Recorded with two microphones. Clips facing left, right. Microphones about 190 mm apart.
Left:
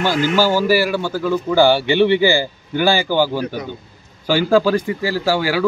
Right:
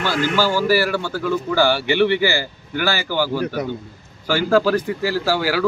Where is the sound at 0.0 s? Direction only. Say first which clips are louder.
Left 3 dB; 15° left (ahead or behind).